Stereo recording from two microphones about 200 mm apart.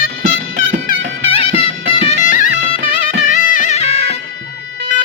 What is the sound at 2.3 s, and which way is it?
Music, 40° left (ahead or behind).